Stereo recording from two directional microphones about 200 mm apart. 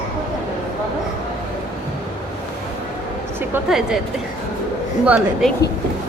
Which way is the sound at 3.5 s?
Centre (ahead or behind).